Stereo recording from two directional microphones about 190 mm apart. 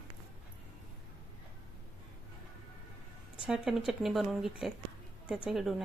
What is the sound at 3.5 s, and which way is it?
Speech, centre (ahead or behind).